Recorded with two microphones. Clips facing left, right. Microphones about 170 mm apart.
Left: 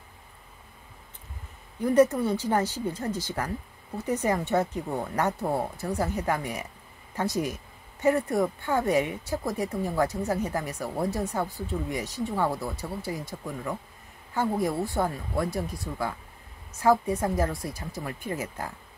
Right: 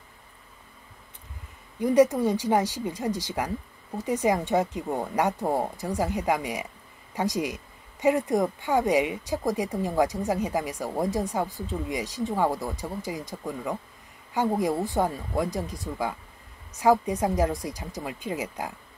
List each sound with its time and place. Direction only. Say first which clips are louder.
1.8 s speech: right 1 dB; 15° right (ahead or behind)